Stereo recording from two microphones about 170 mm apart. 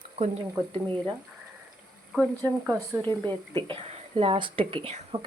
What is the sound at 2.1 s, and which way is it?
Speech, 5° left (ahead or behind).